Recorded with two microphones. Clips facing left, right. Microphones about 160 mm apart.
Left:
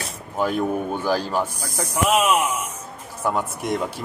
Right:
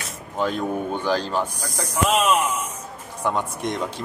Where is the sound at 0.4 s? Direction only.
10° left (ahead or behind).